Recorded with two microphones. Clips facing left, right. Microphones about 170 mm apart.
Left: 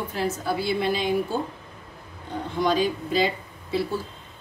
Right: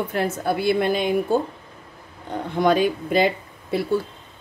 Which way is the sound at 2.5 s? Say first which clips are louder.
Right 4 dB; 60° right (ahead or behind).